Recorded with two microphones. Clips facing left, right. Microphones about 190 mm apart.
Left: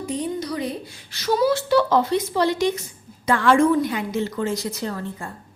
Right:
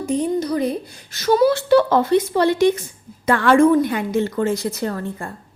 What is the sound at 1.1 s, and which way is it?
Speech, 55° right (ahead or behind).